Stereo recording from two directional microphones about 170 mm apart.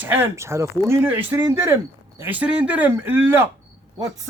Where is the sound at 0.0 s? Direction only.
10° right (ahead or behind).